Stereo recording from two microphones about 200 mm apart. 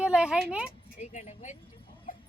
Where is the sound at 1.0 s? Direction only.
35° left (ahead or behind).